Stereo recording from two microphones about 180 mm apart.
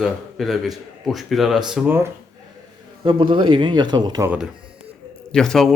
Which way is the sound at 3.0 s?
30° right (ahead or behind).